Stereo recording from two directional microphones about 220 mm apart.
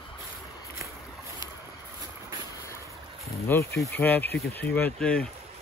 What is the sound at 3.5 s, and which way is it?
Speech, 10° left (ahead or behind).